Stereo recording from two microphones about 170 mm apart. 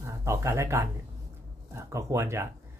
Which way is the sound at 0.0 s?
15° right (ahead or behind).